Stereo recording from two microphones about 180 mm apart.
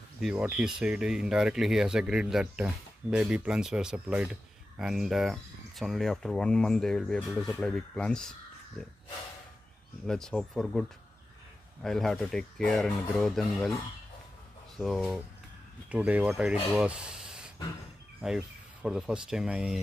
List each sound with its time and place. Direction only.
0.2 s speech: 5° right (ahead or behind)
10.0 s speech: 5° left (ahead or behind)
14.8 s speech: centre (ahead or behind)
16.7 s spray: 5° right (ahead or behind)
18.2 s speech: 5° right (ahead or behind)